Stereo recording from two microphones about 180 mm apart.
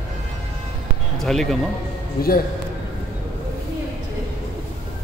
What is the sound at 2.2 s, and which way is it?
Speech, 55° left (ahead or behind).